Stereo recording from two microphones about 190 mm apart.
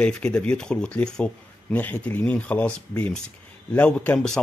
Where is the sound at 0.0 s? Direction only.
5° left (ahead or behind).